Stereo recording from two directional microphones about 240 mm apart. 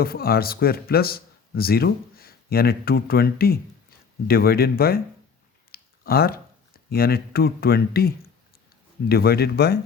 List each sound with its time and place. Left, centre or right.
0.0 s speech: left
5.7 s a sound: left
6.9 s speech: left